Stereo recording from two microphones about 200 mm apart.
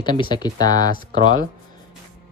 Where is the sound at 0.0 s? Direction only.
20° left (ahead or behind).